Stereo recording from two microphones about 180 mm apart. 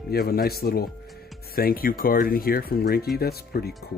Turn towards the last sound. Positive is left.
turn(degrees=60)  # may be behind; listen again after turning